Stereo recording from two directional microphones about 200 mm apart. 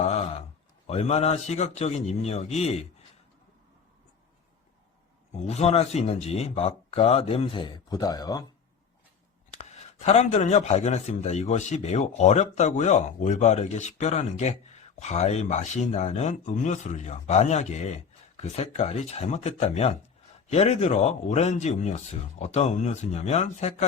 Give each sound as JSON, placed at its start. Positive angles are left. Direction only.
{"t": 0.0, "sound": "a sound", "side_deg": 30}
{"t": 0.9, "sound": "speech", "side_deg": 30}
{"t": 5.3, "sound": "speech", "side_deg": 35}
{"t": 10.1, "sound": "speech", "side_deg": 35}